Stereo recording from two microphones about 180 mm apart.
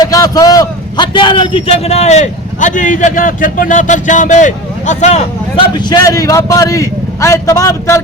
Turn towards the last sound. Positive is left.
turn(degrees=15)  # may be behind; listen again after turning